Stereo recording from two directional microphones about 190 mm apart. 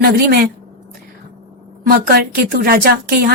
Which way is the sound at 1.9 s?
50° right (ahead or behind).